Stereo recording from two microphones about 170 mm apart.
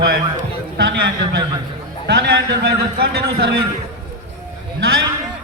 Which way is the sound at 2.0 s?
80° right.